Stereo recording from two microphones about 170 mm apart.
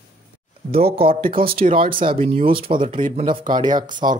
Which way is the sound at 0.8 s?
35° right (ahead or behind).